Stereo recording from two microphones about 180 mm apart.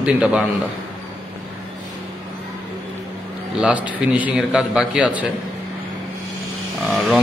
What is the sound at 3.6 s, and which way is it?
A man's voice, 5° right (ahead or behind).